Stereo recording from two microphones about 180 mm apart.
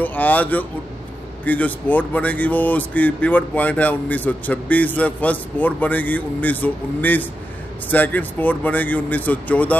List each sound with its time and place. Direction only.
0.0 s speech: 10° left (ahead or behind)